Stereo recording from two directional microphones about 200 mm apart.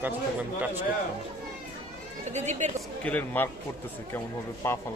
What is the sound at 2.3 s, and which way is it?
Speech, 35° right (ahead or behind).